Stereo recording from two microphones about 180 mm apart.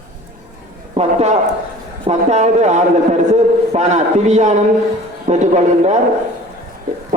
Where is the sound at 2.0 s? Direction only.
40° right (ahead or behind).